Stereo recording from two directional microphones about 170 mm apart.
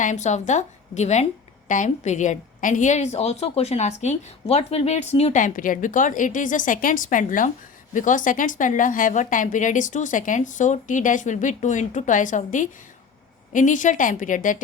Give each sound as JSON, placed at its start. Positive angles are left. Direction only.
{"t": 0.0, "sound": "a woman's voice", "side_deg": 45}